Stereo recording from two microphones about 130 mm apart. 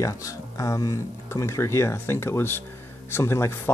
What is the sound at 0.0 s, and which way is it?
Speech, 25° left (ahead or behind).